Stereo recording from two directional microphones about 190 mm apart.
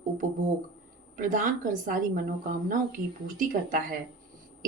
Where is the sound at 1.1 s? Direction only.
45° right (ahead or behind).